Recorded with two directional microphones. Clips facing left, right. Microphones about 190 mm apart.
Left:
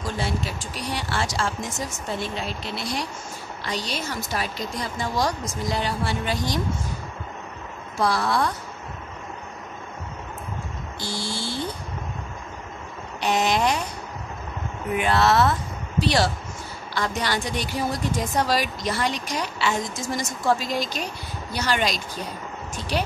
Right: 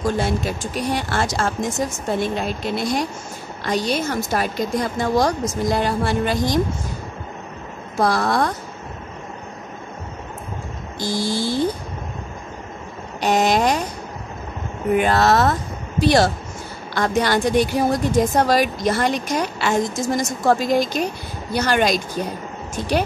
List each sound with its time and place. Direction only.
0.0 s a woman's voice: 50° right (ahead or behind)
8.0 s a woman's voice: 45° right (ahead or behind)
11.0 s speech: 40° right (ahead or behind)
13.2 s speech: 40° right (ahead or behind)
15.0 s a woman's voice: 40° right (ahead or behind)